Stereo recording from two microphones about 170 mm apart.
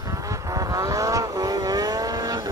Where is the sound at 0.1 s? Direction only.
20° right (ahead or behind).